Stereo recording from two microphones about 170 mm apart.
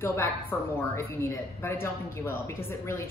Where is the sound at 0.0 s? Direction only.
15° left (ahead or behind).